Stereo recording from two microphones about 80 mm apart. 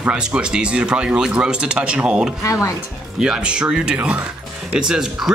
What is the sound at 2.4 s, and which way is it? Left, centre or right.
Speech, left.